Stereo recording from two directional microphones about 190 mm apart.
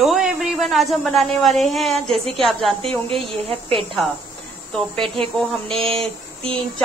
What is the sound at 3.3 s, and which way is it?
Speech, 30° right (ahead or behind).